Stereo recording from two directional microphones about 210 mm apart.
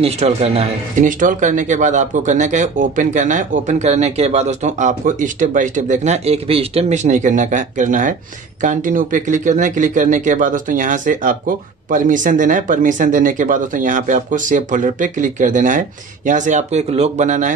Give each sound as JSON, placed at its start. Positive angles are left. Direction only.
{"t": 0.0, "sound": "speech", "side_deg": -30}